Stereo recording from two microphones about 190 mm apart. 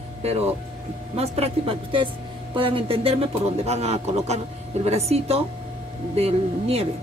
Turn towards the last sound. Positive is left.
turn(degrees=-30)  # may be behind; listen again after turning